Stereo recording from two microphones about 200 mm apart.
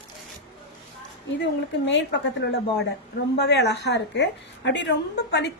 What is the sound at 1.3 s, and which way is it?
A woman's voice, 60° left (ahead or behind).